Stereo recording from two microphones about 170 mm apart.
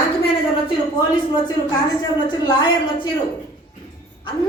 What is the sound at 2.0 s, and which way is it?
Speech, 25° left (ahead or behind).